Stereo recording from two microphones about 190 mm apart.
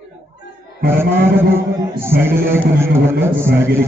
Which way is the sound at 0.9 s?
10° right (ahead or behind).